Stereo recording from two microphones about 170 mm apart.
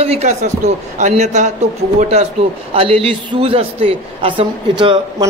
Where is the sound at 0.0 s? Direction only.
40° right (ahead or behind).